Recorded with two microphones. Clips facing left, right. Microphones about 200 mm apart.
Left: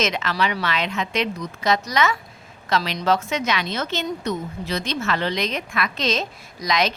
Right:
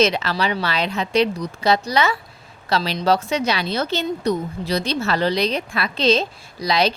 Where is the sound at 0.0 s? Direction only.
35° right (ahead or behind).